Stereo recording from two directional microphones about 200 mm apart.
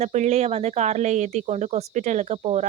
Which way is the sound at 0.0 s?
35° right (ahead or behind).